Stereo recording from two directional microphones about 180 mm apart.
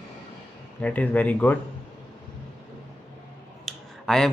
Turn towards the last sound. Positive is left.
turn(degrees=0)  # may be behind; listen again after turning